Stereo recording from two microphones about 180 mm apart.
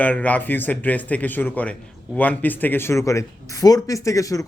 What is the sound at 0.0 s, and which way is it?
Speech, 10° left (ahead or behind).